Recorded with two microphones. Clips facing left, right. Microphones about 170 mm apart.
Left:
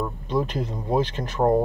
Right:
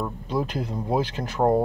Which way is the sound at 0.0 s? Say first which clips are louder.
Left 2 dB; 5° right (ahead or behind).